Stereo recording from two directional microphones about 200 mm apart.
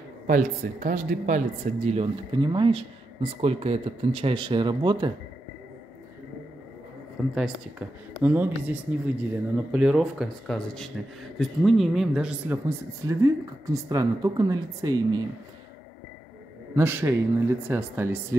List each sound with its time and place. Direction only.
0.3 s speech: 40° right (ahead or behind); by 5.1 s 25° right (ahead or behind)
7.3 s speech: 5° right (ahead or behind)
16.7 s speech: 10° right (ahead or behind)